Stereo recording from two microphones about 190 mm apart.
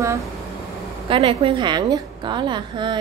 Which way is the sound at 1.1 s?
30° right (ahead or behind).